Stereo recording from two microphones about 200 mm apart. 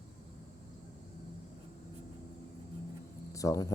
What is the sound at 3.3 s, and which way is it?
Speech, 15° left (ahead or behind).